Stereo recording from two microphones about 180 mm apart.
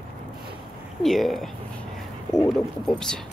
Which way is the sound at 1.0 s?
Centre (ahead or behind).